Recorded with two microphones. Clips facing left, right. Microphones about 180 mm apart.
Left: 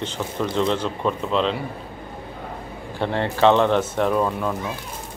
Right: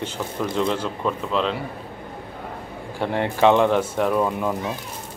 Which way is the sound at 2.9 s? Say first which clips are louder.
Even; 10° right (ahead or behind).